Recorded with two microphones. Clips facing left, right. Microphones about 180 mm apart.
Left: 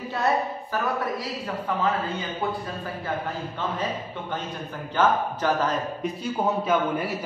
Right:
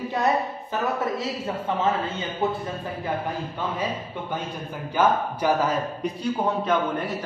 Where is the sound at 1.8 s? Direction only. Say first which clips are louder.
Even; 25° right (ahead or behind).